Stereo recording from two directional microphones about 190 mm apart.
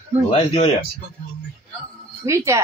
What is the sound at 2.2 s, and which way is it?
Speech, 15° right (ahead or behind).